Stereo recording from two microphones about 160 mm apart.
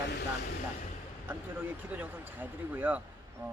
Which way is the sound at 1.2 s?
10° right (ahead or behind).